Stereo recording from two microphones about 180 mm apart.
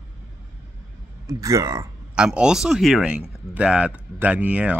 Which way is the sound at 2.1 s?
5° right (ahead or behind).